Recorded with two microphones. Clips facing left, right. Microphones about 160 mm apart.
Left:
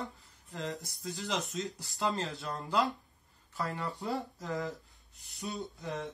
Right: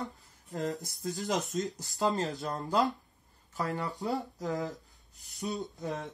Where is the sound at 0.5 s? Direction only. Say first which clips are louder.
Right 5 dB; 45° right (ahead or behind).